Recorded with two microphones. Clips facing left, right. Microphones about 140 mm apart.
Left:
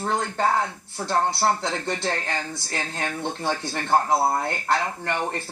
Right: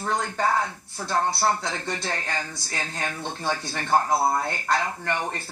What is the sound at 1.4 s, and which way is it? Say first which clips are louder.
Speech: left 2 dB; 25° left (ahead or behind).